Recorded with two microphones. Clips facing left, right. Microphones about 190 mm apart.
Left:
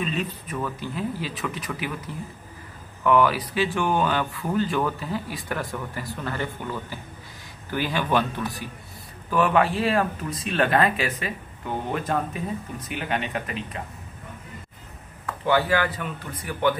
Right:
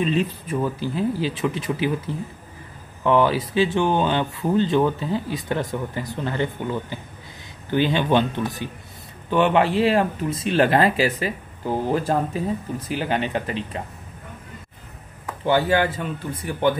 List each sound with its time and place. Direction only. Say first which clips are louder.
0.0 s speech: right 6 dB; 30° right (ahead or behind)
15.4 s speech: right 3 dB; 25° right (ahead or behind)